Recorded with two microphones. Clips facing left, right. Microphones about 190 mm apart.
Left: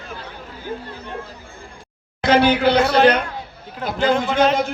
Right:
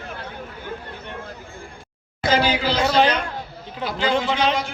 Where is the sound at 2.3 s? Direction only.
55° left (ahead or behind).